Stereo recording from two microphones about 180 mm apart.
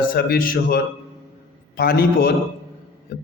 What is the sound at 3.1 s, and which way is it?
Music, 60° left (ahead or behind).